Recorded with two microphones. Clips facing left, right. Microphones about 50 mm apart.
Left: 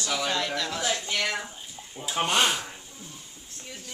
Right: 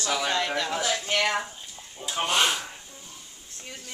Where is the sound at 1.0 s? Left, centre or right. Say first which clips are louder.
Right 4 dB; right.